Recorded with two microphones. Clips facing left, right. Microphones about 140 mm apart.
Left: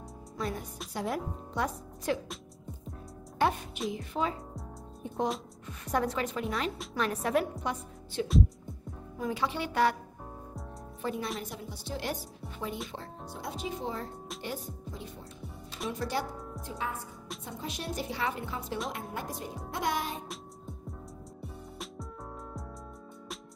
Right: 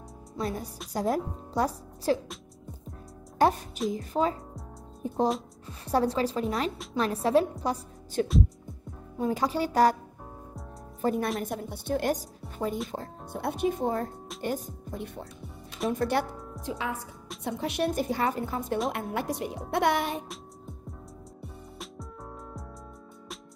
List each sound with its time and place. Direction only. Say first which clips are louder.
0.4 s speech: right 3 dB; 35° right (ahead or behind)
3.3 s a woman's voice: right 5 dB; 40° right (ahead or behind)
9.3 s speech: right 5 dB; 40° right (ahead or behind)
11.0 s a woman's voice: right 7 dB; 45° right (ahead or behind)
13.3 s speech: right 9 dB; 60° right (ahead or behind)
16.6 s speech: right 4 dB; 90° right
17.5 s speech: right 10 dB; 70° right (ahead or behind); by 18.8 s 50° right (ahead or behind)
18.9 s a woman's voice: right 7 dB; 70° right (ahead or behind)
21.4 s music: even; centre (ahead or behind)